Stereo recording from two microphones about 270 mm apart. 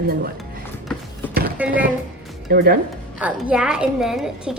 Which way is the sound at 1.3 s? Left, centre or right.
Right.